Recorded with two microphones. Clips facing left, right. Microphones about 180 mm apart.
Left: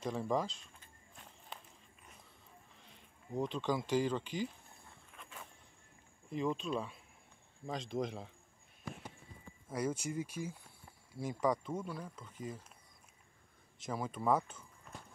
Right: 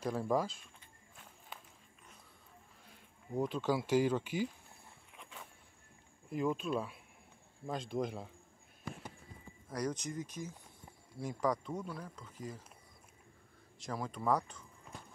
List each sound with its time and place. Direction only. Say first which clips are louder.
0.0 s a sound: right 2 dB; 5° right (ahead or behind)
2.8 s speech: right 1 dB; 5° right (ahead or behind)
5.1 s walk: even; 15° right (ahead or behind)
6.3 s speech: right 2 dB; 5° right (ahead or behind)
9.7 s speech: left 1 dB; 5° left (ahead or behind)
13.7 s speech: left 1 dB; centre (ahead or behind)